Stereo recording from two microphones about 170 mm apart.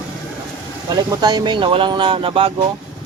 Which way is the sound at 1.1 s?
25° right (ahead or behind).